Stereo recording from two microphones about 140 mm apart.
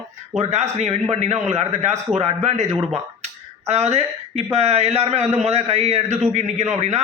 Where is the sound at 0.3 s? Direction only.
50° right (ahead or behind).